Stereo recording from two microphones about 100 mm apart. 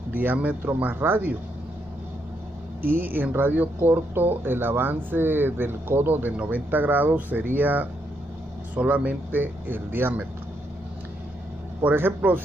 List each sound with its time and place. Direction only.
0.1 s speech: 15° right (ahead or behind)
3.0 s speech: 20° right (ahead or behind)
11.8 s speech: 20° right (ahead or behind)